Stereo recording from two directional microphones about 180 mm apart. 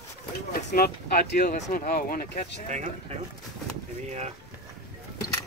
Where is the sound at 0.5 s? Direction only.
55° left (ahead or behind).